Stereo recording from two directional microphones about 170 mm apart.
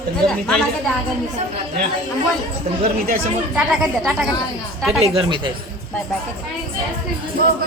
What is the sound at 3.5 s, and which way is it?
Speech, centre (ahead or behind).